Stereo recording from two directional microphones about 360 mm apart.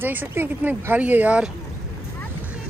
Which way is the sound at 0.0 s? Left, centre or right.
Centre.